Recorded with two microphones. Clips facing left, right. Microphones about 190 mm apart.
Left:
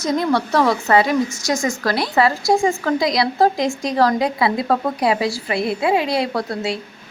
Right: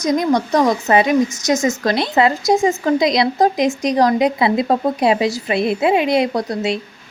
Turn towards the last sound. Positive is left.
turn(degrees=-20)  # may be behind; listen again after turning